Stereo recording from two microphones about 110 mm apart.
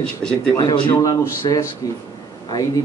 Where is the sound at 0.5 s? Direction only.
40° left (ahead or behind).